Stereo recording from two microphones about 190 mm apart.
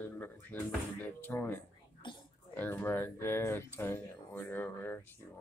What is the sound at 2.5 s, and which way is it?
Speech, 10° left (ahead or behind).